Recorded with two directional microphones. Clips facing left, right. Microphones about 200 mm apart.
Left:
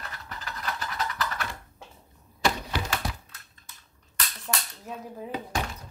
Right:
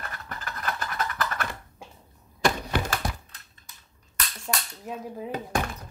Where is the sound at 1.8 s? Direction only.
10° right (ahead or behind).